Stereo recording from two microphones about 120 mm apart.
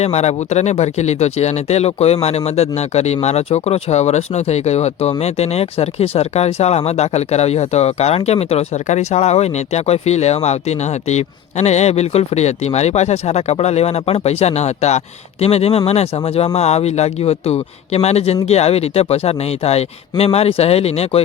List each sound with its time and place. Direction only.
0.0 s speech: 65° left (ahead or behind)